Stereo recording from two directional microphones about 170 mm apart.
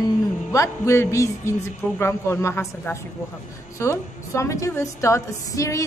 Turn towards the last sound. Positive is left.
turn(degrees=20)  # may be behind; listen again after turning